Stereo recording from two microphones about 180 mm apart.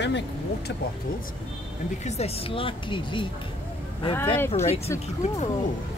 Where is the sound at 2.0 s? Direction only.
35° left (ahead or behind).